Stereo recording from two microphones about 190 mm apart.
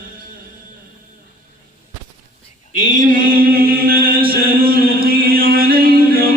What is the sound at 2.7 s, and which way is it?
Chant, 45° right (ahead or behind).